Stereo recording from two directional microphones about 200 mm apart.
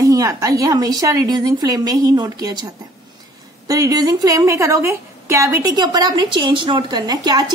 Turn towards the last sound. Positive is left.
turn(degrees=-20)  # may be behind; listen again after turning